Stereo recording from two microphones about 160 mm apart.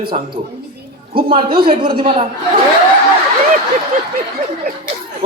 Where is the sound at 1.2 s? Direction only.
35° right (ahead or behind).